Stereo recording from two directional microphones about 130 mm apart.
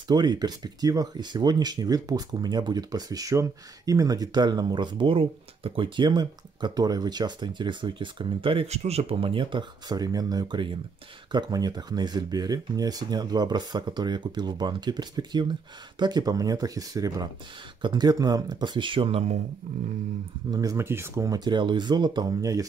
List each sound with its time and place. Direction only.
0.1 s speech: 30° right (ahead or behind); by 19.3 s 50° right (ahead or behind)
20.5 s speech: 25° right (ahead or behind)
21.5 s speech: 35° right (ahead or behind)